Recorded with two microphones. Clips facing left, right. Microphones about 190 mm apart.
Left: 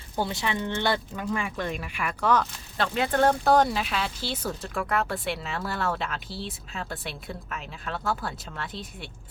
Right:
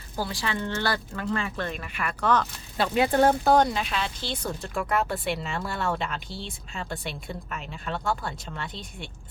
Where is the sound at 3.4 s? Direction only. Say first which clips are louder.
Even; centre (ahead or behind).